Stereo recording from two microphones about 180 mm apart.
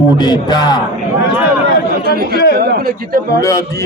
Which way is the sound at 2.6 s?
60° right (ahead or behind).